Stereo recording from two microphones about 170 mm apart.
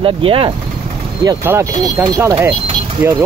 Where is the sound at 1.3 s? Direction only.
20° right (ahead or behind).